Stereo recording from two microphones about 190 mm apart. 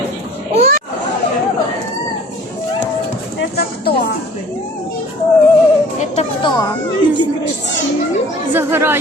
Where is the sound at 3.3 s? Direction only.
55° left (ahead or behind).